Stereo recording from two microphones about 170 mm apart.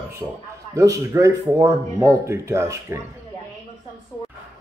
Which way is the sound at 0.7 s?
20° right (ahead or behind).